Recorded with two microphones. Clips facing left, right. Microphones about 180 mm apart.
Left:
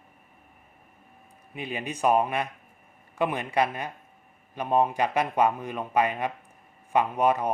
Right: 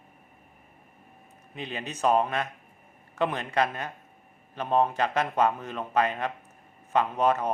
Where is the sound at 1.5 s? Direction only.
10° left (ahead or behind).